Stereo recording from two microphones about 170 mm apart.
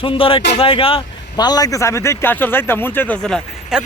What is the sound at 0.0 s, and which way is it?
Speech, 30° left (ahead or behind).